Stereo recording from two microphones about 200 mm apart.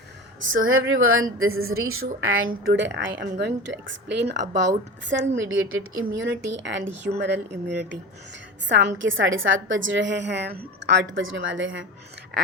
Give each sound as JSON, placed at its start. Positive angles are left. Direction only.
{"t": 0.5, "sound": "speech", "side_deg": -85}
{"t": 2.6, "sound": "a woman's voice", "side_deg": -65}